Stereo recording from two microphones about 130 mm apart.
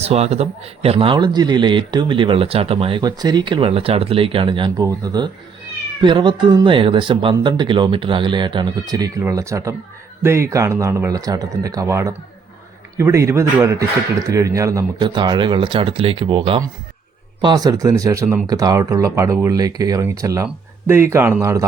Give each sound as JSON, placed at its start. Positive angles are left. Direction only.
{"t": 0.0, "sound": "a man's voice", "side_deg": -55}
{"t": 3.0, "sound": "speech", "side_deg": -30}
{"t": 17.4, "sound": "speech", "side_deg": -30}